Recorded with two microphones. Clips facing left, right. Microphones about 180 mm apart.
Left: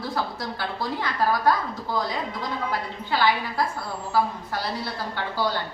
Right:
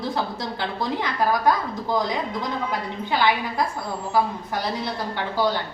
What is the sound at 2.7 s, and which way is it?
A woman's voice, 20° right (ahead or behind).